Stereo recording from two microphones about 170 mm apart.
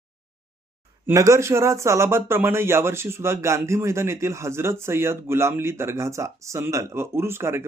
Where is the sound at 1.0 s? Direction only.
20° right (ahead or behind).